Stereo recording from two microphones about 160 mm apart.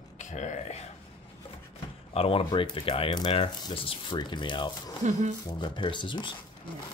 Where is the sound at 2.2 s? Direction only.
35° left (ahead or behind).